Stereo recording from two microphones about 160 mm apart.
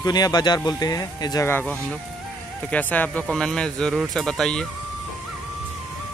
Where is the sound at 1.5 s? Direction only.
10° left (ahead or behind).